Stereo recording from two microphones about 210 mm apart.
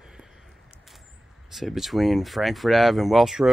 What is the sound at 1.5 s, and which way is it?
Speech, centre (ahead or behind).